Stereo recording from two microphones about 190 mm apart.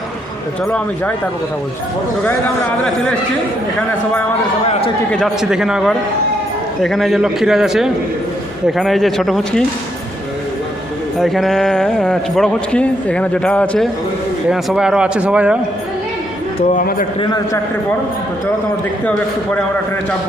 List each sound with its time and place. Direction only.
5.1 s speech: centre (ahead or behind)
11.2 s speech: centre (ahead or behind)
16.6 s speech: 40° left (ahead or behind)
17.2 s a man's voice: 20° left (ahead or behind)